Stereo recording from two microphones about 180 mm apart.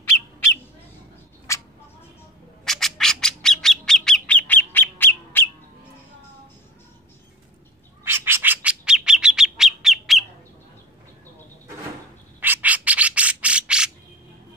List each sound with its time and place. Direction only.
1.5 s a sound: 15° left (ahead or behind)
2.6 s bird: centre (ahead or behind)
8.0 s bird: 10° right (ahead or behind)
12.4 s bird: 10° right (ahead or behind)